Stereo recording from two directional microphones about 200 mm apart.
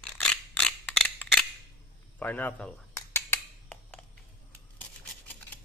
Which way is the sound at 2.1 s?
10° left (ahead or behind).